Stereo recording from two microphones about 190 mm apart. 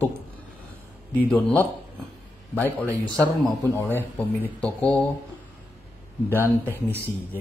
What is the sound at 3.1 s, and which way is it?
A man's voice, 5° left (ahead or behind).